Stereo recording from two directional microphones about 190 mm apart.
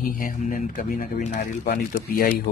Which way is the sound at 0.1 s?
45° left (ahead or behind).